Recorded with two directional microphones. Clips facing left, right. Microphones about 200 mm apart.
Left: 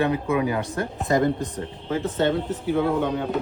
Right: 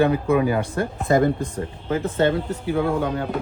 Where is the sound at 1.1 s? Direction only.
55° right (ahead or behind).